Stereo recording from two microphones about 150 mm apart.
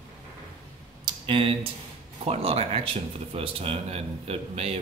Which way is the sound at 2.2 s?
45° right (ahead or behind).